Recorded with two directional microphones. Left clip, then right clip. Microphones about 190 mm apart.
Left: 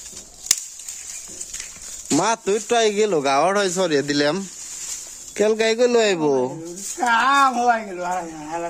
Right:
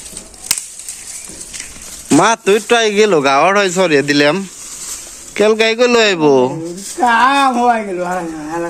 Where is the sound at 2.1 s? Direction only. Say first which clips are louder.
Right 9 dB; centre (ahead or behind).